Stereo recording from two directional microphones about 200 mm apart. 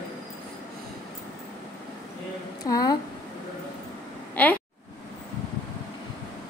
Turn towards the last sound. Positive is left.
turn(degrees=5)  # may be behind; listen again after turning